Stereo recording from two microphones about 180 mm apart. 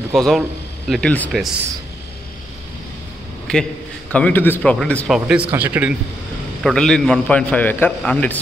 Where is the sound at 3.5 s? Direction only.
5° left (ahead or behind).